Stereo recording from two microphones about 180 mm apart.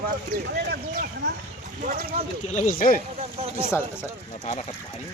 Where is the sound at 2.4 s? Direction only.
40° left (ahead or behind).